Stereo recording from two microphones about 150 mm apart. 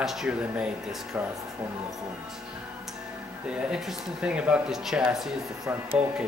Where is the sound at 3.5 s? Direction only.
5° right (ahead or behind).